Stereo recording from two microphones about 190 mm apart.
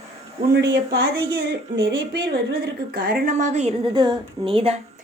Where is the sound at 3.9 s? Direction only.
25° right (ahead or behind).